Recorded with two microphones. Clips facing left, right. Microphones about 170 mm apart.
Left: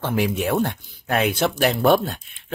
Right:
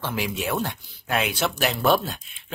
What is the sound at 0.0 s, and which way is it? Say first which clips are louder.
Speech: left 6 dB; 55° left (ahead or behind).